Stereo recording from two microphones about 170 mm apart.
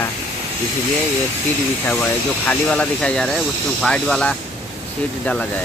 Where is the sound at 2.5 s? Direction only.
5° left (ahead or behind).